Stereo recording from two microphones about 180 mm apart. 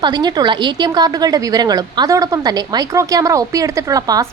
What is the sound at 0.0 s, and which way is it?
A woman's voice, 25° right (ahead or behind).